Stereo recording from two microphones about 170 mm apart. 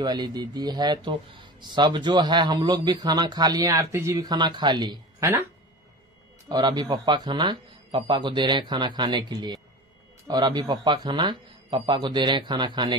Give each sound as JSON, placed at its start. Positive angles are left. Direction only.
{"t": 0.0, "sound": "speech", "side_deg": -25}
{"t": 6.5, "sound": "speech", "side_deg": -25}